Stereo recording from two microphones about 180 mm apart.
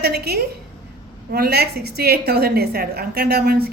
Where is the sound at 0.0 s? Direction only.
60° right (ahead or behind).